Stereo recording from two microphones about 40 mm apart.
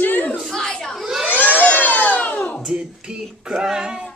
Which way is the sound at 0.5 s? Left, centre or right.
Centre.